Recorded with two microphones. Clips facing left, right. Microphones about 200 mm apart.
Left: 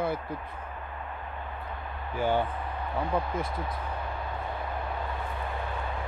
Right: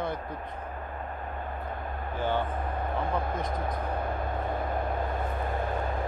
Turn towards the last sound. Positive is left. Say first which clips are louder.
# right 4 dB
turn(degrees=-45)  # may be behind; listen again after turning